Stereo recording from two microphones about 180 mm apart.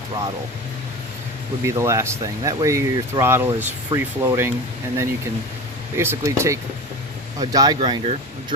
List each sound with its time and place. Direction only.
1.6 s speech: 15° right (ahead or behind)
6.0 s speech: 15° right (ahead or behind)